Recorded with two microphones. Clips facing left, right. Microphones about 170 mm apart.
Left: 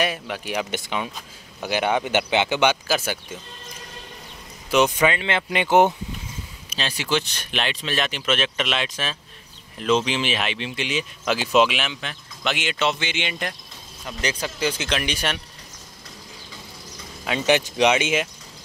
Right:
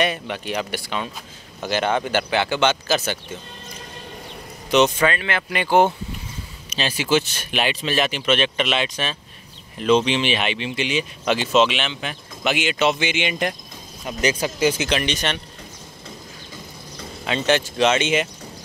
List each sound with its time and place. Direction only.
0.0 s speech: 5° left (ahead or behind)
0.7 s speech: 20° left (ahead or behind)
4.6 s speech: 5° left (ahead or behind)
6.7 s speech: centre (ahead or behind)
12.0 s speech: 10° right (ahead or behind)
15.0 s speech: 5° left (ahead or behind)
17.3 s speech: 10° left (ahead or behind)